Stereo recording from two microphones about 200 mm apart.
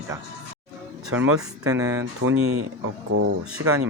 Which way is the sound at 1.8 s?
15° right (ahead or behind).